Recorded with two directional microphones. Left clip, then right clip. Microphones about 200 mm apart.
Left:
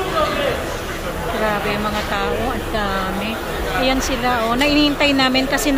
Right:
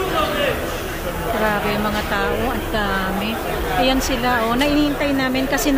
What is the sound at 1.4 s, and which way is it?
Speech, 10° right (ahead or behind).